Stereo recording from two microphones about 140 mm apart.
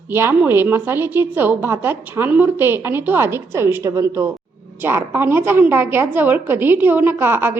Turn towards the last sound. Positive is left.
turn(degrees=-15)  # may be behind; listen again after turning